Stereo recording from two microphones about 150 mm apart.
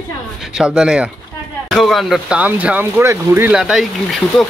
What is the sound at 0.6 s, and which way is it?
Speech, 5° right (ahead or behind).